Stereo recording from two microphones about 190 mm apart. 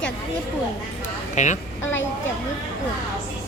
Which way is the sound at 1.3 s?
40° left (ahead or behind).